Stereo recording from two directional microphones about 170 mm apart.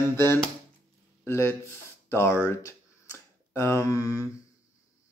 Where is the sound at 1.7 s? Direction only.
15° left (ahead or behind).